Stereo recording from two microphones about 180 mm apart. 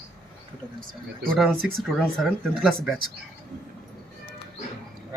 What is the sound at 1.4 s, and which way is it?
A man's voice, centre (ahead or behind).